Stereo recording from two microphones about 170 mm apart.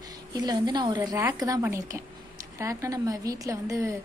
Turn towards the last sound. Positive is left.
turn(degrees=-20)  # may be behind; listen again after turning